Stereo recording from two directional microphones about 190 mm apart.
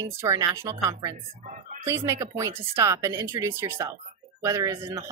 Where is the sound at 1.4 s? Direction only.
40° right (ahead or behind).